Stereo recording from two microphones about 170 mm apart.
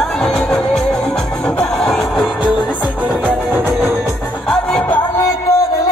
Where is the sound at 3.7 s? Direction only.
Centre (ahead or behind).